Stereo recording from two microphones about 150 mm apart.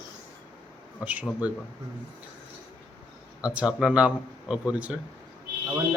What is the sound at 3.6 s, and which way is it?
A man's voice, 5° right (ahead or behind).